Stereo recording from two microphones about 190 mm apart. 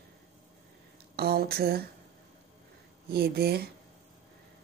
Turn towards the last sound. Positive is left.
turn(degrees=-55)  # may be behind; listen again after turning